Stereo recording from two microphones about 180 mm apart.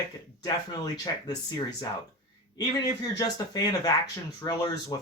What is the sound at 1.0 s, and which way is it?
Speech, 20° left (ahead or behind).